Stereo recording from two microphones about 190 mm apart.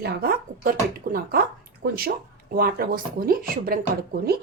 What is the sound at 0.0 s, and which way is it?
Speech, 50° right (ahead or behind).